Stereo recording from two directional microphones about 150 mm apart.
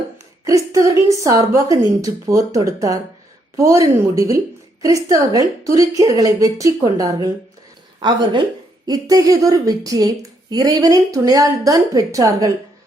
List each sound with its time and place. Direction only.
0.4 s a woman's voice: 20° right (ahead or behind)
8.9 s a woman's voice: 25° right (ahead or behind)